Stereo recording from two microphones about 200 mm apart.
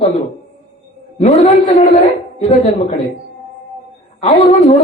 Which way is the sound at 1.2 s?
35° left (ahead or behind).